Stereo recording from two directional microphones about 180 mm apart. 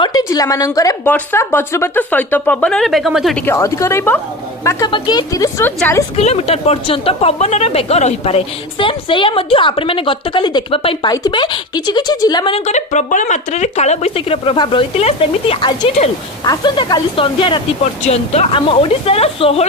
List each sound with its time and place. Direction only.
0.0 s a woman's voice: 20° left (ahead or behind); by 3.4 s centre (ahead or behind)
3.4 s speech: 15° left (ahead or behind)
4.9 s a woman's voice: 25° left (ahead or behind)
6.1 s a woman's voice: 35° left (ahead or behind)
12.5 s speech: 40° left (ahead or behind)